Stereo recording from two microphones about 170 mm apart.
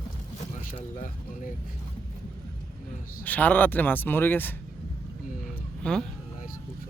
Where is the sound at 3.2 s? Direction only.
10° left (ahead or behind).